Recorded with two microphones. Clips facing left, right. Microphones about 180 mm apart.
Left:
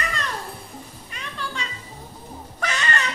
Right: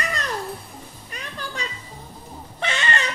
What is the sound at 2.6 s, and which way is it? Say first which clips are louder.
Music: right 1 dB; 30° right (ahead or behind).